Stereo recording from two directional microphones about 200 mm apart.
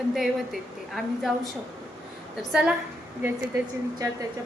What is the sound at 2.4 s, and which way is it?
Speech, centre (ahead or behind).